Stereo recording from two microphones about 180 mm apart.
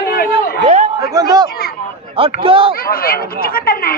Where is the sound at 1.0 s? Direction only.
20° right (ahead or behind).